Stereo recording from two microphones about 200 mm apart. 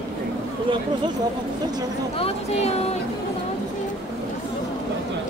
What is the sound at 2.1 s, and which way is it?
Speech, 30° left (ahead or behind).